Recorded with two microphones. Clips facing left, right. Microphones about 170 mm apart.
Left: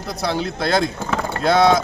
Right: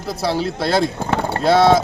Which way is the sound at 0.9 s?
30° right (ahead or behind).